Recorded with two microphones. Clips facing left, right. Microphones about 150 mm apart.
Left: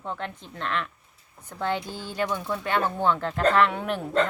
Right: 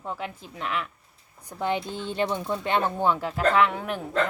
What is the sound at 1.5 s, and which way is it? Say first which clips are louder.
Speech: right 1 dB; 15° right (ahead or behind).